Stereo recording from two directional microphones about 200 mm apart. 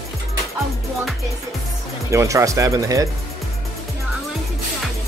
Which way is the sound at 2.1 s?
15° right (ahead or behind).